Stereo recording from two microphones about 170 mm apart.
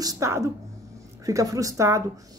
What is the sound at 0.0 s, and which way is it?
Speech, 20° right (ahead or behind).